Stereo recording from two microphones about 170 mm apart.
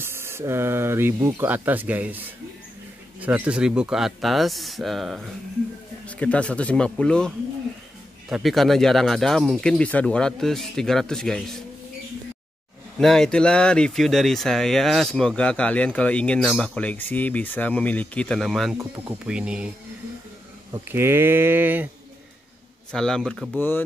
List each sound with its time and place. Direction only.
0.0 s speech: 15° right (ahead or behind); by 11.6 s centre (ahead or behind)
13.0 s speech: centre (ahead or behind)
20.7 s speech: 15° right (ahead or behind)
22.8 s speech: 5° left (ahead or behind)